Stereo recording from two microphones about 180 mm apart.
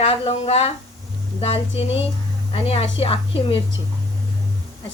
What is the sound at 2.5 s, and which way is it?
Speech, 30° left (ahead or behind).